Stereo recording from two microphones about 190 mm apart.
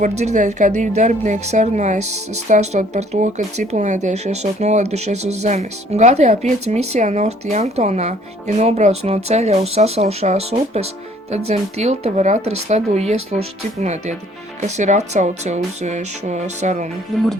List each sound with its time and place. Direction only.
0.0 s speech: 35° right (ahead or behind)
17.1 s speech: centre (ahead or behind)